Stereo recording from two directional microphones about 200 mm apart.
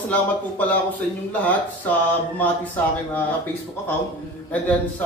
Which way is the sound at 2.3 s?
10° left (ahead or behind).